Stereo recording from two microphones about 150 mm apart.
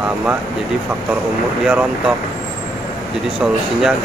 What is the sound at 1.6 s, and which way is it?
Speech, 10° right (ahead or behind).